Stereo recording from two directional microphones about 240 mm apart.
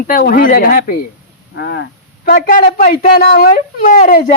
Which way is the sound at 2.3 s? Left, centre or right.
Left.